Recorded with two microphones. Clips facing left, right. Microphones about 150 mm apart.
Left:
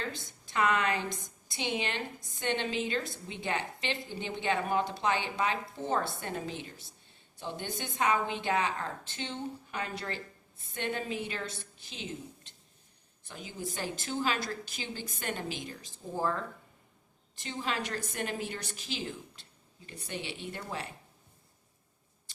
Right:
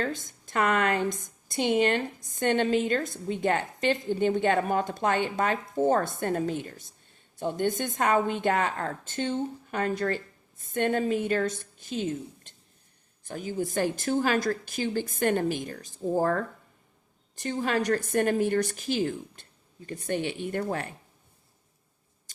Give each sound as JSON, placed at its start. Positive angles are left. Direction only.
{"t": 0.0, "sound": "a woman's voice", "side_deg": -45}